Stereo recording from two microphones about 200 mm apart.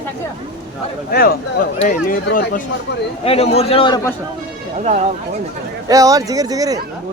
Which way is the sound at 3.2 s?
30° left (ahead or behind).